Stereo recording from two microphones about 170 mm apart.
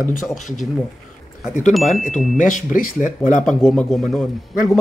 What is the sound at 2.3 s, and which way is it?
Speech, 50° left (ahead or behind).